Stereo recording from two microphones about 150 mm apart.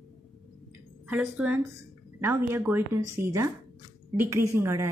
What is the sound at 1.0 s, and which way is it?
A woman's voice, 10° right (ahead or behind).